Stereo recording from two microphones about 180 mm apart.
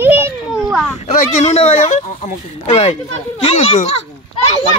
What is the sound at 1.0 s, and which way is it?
A child's voice, 40° left (ahead or behind).